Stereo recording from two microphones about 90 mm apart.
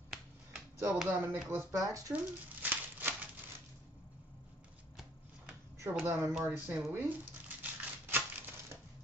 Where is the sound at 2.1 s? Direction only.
15° right (ahead or behind).